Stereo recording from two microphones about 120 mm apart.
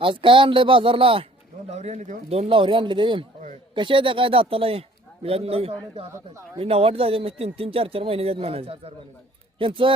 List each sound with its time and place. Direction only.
0.0 s a man's voice: 45° right (ahead or behind)
1.7 s a man's voice: 70° right (ahead or behind); by 9.9 s 45° right (ahead or behind)